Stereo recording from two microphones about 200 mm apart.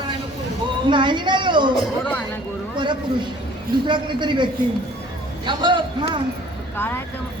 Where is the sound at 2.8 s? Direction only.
25° right (ahead or behind).